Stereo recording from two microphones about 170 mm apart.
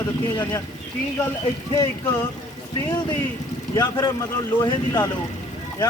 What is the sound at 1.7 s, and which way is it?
Speech, 20° left (ahead or behind).